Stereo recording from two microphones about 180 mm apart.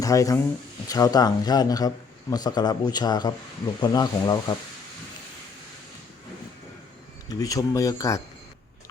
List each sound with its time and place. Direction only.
0.0 s speech: 20° left (ahead or behind)
7.3 s speech: 20° left (ahead or behind)